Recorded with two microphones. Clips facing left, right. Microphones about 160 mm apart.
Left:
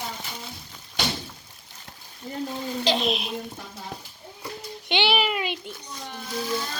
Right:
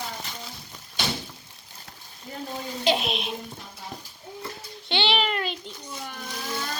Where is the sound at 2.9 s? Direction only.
Centre (ahead or behind).